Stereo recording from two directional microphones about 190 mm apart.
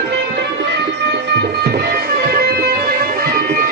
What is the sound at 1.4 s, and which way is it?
Music, 55° right (ahead or behind).